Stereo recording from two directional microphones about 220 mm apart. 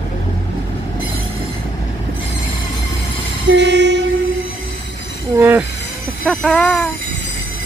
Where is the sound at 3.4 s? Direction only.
55° right (ahead or behind).